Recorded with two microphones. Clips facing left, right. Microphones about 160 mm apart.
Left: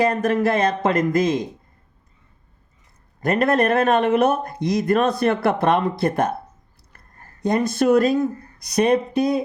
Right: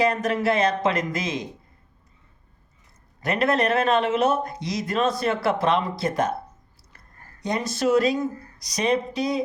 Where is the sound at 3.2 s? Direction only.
50° left (ahead or behind).